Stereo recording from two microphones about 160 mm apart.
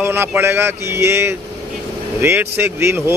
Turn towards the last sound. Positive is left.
turn(degrees=-15)  # may be behind; listen again after turning